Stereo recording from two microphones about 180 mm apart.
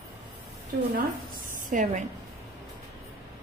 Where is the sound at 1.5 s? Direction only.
45° right (ahead or behind).